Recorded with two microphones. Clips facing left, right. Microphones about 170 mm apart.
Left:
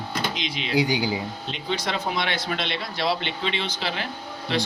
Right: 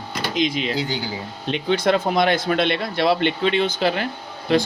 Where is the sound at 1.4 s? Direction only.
60° right (ahead or behind).